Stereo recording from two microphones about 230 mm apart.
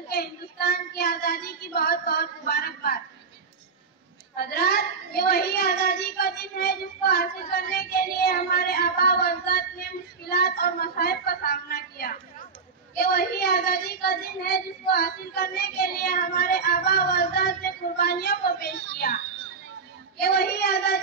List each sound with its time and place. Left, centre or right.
0.1 s speech: left
4.4 s a woman's voice: left
20.2 s speech: left